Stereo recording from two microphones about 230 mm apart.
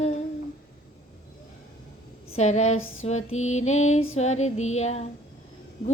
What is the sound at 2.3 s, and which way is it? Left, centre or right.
Music, left.